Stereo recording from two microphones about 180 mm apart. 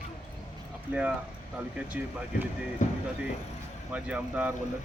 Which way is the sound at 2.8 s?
45° left (ahead or behind).